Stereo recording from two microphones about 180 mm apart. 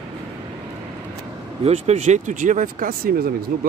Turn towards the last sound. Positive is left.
turn(degrees=-55)  # may be behind; listen again after turning